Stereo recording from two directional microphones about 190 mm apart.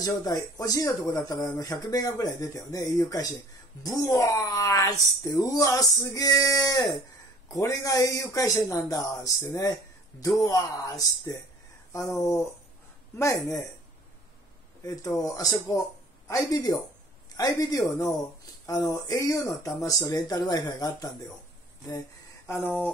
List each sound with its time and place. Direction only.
0.0 s speech: 20° left (ahead or behind)
14.9 s speech: 20° left (ahead or behind)
22.5 s speech: 10° left (ahead or behind)